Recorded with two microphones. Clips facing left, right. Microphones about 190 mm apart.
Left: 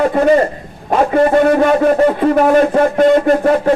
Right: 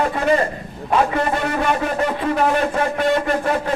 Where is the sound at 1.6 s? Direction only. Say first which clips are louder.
Left 9 dB; 45° left (ahead or behind).